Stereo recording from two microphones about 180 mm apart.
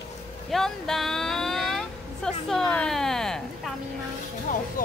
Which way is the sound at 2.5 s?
5° left (ahead or behind).